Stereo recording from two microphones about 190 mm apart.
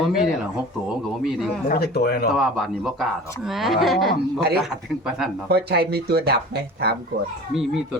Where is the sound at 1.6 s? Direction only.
55° left (ahead or behind).